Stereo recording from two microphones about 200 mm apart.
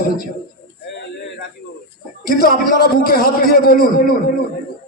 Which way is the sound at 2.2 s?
45° left (ahead or behind).